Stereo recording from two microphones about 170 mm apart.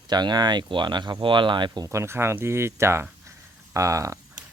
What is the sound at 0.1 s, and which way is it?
Speech, 25° right (ahead or behind).